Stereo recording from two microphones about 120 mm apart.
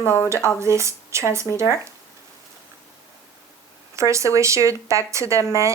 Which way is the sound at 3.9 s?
25° right (ahead or behind).